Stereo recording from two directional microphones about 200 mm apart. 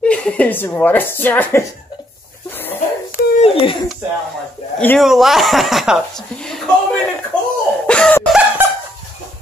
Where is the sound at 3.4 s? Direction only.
25° left (ahead or behind).